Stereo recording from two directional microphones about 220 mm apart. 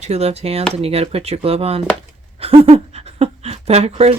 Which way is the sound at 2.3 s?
25° right (ahead or behind).